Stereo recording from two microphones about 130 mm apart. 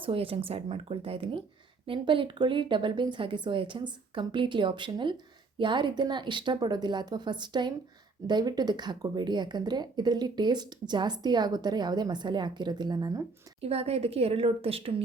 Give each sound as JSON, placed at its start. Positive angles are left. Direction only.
{"t": 0.0, "sound": "a woman's voice", "side_deg": -45}
{"t": 13.6, "sound": "a woman's voice", "side_deg": -50}